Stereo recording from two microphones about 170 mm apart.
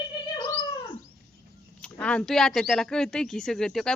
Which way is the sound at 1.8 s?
5° left (ahead or behind).